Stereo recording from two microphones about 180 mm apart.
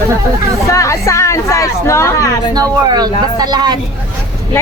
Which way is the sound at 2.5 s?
20° right (ahead or behind).